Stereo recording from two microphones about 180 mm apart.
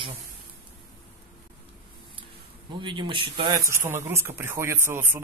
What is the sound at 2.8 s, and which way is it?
Speech, 25° right (ahead or behind).